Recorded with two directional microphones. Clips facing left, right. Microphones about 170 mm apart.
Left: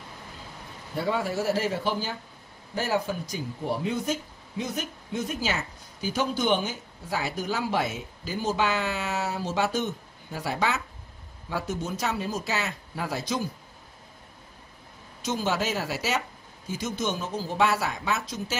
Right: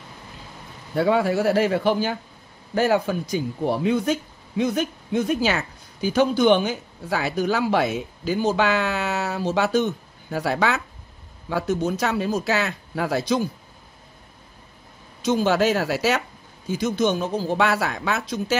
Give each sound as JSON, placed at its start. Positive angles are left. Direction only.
{"t": 0.9, "sound": "speech", "side_deg": -70}
{"t": 15.2, "sound": "speech", "side_deg": -65}